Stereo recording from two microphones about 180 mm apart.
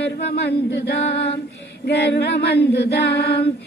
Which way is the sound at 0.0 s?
65° left (ahead or behind).